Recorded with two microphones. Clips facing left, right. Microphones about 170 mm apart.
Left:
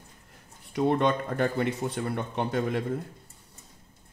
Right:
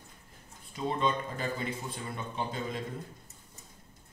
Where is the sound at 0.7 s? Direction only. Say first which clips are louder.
Left 7 dB; 70° left (ahead or behind).